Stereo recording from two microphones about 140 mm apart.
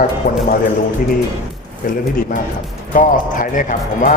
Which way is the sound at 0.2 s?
65° left (ahead or behind).